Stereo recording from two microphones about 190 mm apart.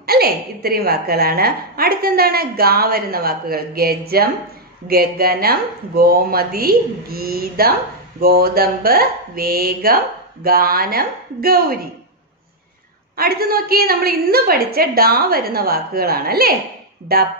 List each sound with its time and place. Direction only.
0.0 s a woman's voice: 55° right (ahead or behind)
13.1 s a woman's voice: 50° right (ahead or behind)